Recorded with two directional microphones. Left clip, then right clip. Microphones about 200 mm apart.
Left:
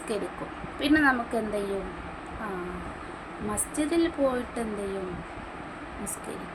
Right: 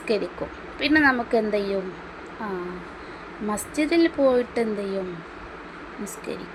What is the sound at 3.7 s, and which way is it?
Speech, 30° right (ahead or behind).